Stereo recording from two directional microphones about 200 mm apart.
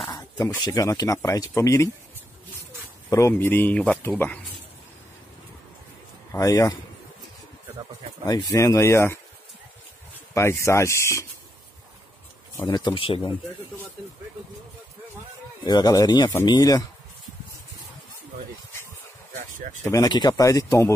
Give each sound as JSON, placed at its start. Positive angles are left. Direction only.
{"t": 0.0, "sound": "speech", "side_deg": 15}
{"t": 3.1, "sound": "speech", "side_deg": 15}
{"t": 6.3, "sound": "speech", "side_deg": 15}
{"t": 8.3, "sound": "speech", "side_deg": 20}
{"t": 10.3, "sound": "speech", "side_deg": 15}
{"t": 12.5, "sound": "speech", "side_deg": 20}
{"t": 15.6, "sound": "speech", "side_deg": 20}
{"t": 19.8, "sound": "speech", "side_deg": 15}